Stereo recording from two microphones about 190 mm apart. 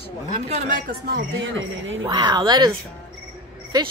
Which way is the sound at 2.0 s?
25° right (ahead or behind).